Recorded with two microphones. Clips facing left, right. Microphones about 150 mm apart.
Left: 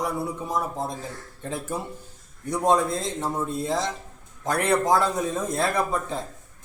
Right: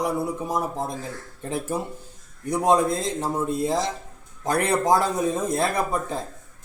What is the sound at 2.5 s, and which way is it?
A man's voice, 15° right (ahead or behind).